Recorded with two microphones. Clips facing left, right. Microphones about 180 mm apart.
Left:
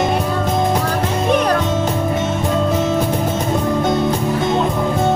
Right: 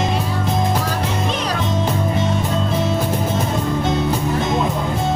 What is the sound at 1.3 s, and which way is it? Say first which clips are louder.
Music: left 8 dB; 55° left (ahead or behind).